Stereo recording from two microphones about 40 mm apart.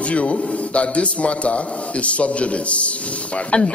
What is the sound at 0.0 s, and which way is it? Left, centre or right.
Speech, left.